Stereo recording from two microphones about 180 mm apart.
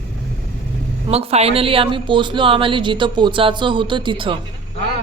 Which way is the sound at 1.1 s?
35° right (ahead or behind).